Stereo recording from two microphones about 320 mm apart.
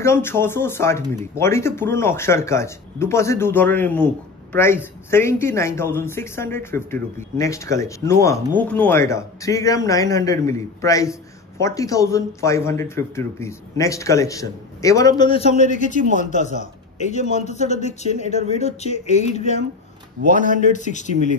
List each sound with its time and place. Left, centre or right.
0.0 s a man's voice: centre